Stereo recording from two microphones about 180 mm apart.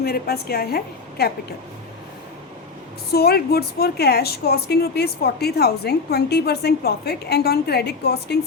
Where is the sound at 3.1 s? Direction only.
60° left (ahead or behind).